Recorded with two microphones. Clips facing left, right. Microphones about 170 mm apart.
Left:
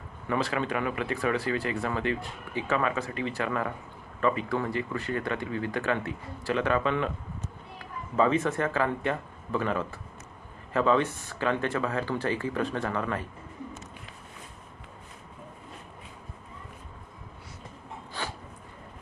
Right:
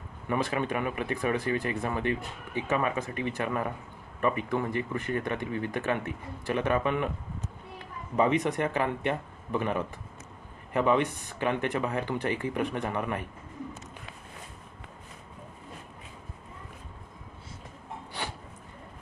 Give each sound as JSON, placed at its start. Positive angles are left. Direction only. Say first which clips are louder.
{"t": 0.3, "sound": "speech", "louder": "even", "side_deg": -20}